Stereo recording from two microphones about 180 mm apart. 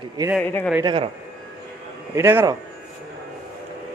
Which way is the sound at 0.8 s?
25° right (ahead or behind).